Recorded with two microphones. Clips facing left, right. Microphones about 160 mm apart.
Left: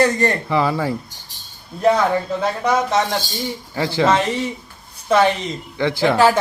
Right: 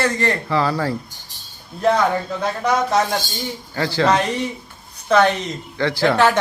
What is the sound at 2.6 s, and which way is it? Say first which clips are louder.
Speech: right 1 dB; centre (ahead or behind).